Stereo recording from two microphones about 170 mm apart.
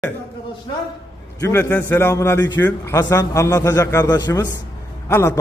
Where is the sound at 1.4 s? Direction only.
15° left (ahead or behind).